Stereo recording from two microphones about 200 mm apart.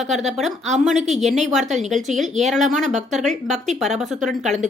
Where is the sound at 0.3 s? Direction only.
Centre (ahead or behind).